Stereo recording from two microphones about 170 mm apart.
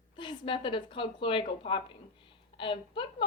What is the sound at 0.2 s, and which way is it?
A woman's voice, 30° left (ahead or behind).